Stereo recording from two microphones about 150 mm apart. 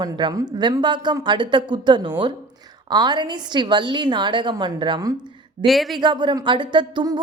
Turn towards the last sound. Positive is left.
turn(degrees=-30)  # may be behind; listen again after turning